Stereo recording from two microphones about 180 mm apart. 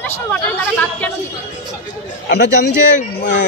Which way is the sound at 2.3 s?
70° left (ahead or behind).